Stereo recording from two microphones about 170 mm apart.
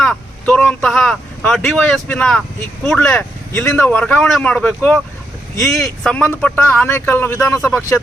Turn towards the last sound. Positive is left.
turn(degrees=15)  # may be behind; listen again after turning